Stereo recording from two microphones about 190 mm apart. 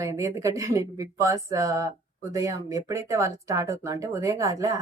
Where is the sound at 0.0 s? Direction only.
15° right (ahead or behind).